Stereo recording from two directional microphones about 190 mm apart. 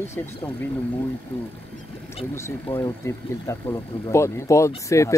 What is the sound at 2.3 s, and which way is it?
Speech, 15° left (ahead or behind).